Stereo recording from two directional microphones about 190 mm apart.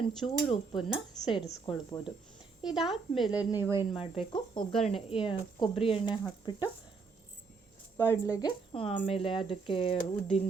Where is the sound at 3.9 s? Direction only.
30° left (ahead or behind).